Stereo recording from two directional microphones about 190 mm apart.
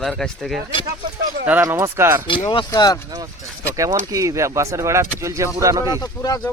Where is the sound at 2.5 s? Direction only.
25° left (ahead or behind).